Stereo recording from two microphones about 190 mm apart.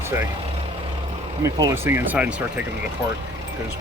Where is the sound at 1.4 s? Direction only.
20° right (ahead or behind).